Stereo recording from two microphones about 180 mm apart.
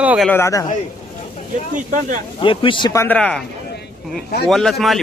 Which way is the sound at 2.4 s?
30° left (ahead or behind).